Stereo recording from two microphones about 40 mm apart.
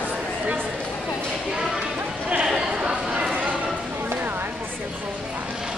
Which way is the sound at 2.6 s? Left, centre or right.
Centre.